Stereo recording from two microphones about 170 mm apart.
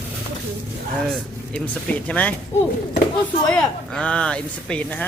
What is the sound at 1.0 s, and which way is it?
Speech, 5° left (ahead or behind).